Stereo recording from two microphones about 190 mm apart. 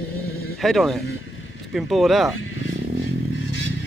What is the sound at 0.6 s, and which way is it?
Speech, centre (ahead or behind).